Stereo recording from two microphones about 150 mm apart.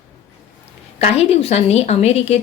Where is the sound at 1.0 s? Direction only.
45° left (ahead or behind).